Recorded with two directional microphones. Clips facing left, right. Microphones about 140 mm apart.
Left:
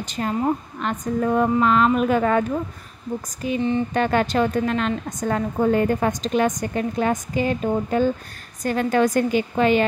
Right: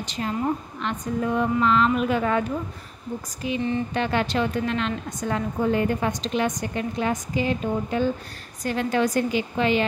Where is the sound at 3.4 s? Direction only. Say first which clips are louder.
Left 3 dB; 45° left (ahead or behind).